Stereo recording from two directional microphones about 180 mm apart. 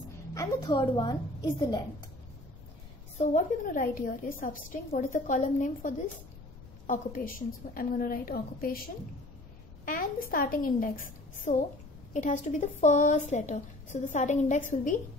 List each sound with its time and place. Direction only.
0.3 s a woman's voice: 20° left (ahead or behind)
3.2 s a woman's voice: 45° left (ahead or behind)